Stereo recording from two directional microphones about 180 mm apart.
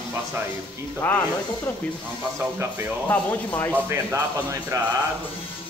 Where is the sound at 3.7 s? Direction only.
15° right (ahead or behind).